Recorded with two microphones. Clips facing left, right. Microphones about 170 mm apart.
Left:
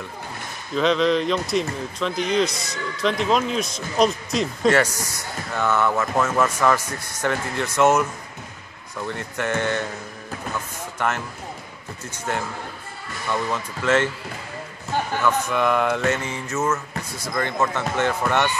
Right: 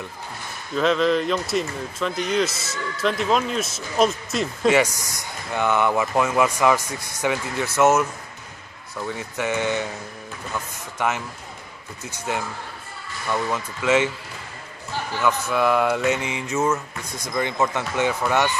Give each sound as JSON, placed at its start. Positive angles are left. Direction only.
{"t": 0.7, "sound": "speech", "side_deg": 0}
{"t": 11.0, "sound": "speech", "side_deg": -10}
{"t": 15.2, "sound": "speech", "side_deg": -5}
{"t": 16.2, "sound": "speech", "side_deg": -15}